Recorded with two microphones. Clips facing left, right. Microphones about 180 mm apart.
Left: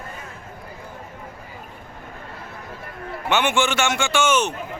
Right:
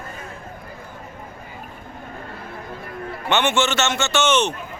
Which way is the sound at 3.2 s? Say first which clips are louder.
Right 1 dB; 10° left (ahead or behind).